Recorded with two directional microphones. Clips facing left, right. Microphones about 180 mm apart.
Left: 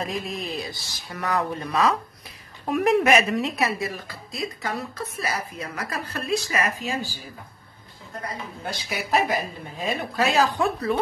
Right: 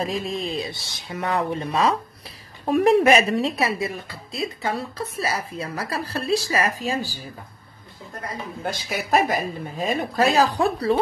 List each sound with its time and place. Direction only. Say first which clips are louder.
0.0 s a woman's voice: right 4 dB; 30° right (ahead or behind)
8.8 s a woman's voice: right 2 dB; 45° right (ahead or behind)